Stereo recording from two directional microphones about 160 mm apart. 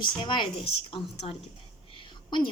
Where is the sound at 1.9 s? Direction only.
30° left (ahead or behind).